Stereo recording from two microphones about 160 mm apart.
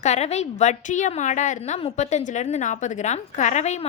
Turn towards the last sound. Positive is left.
turn(degrees=45)  # may be behind; listen again after turning